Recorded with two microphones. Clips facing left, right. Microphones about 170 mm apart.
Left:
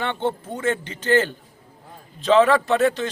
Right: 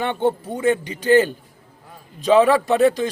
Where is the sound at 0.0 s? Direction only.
15° right (ahead or behind).